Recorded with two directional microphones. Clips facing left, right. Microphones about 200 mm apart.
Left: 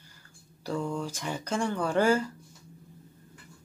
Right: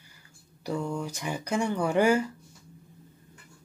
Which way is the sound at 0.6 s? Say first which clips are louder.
Even; 10° right (ahead or behind).